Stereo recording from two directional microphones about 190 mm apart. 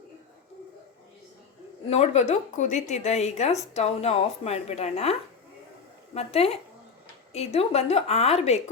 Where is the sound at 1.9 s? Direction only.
35° left (ahead or behind).